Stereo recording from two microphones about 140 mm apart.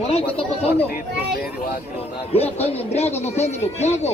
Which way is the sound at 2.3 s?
45° left (ahead or behind).